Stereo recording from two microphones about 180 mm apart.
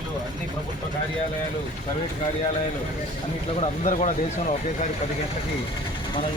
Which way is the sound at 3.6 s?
40° left (ahead or behind).